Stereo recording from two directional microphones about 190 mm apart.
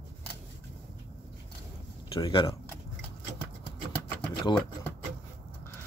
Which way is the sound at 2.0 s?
30° left (ahead or behind).